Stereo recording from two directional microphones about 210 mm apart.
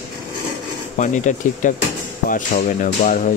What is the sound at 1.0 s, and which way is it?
Speech, 35° left (ahead or behind).